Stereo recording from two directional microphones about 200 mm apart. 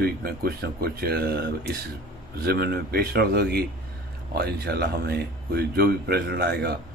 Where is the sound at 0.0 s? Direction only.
50° right (ahead or behind).